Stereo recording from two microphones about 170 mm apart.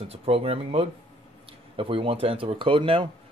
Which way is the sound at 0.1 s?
35° right (ahead or behind).